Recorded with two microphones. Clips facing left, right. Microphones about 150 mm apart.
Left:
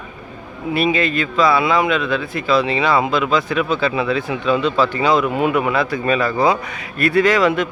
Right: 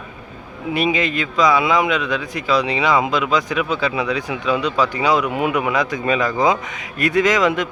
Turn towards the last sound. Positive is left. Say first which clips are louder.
# left 2 dB
turn(degrees=-15)  # may be behind; listen again after turning